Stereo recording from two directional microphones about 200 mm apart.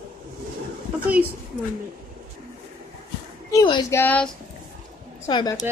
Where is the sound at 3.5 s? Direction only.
20° left (ahead or behind).